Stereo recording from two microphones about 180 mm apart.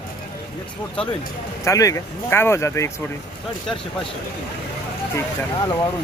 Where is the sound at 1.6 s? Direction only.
20° left (ahead or behind).